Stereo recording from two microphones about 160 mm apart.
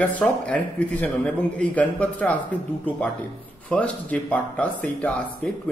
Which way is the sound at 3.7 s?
10° left (ahead or behind).